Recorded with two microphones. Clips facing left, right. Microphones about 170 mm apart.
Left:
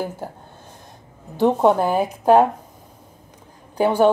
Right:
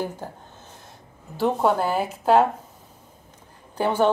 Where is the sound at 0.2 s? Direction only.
10° left (ahead or behind).